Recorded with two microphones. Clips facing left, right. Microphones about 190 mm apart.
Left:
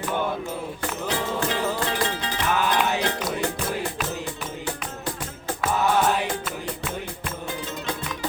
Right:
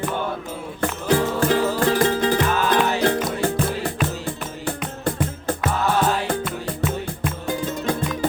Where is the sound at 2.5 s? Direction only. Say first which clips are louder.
Right 3 dB; 15° left (ahead or behind).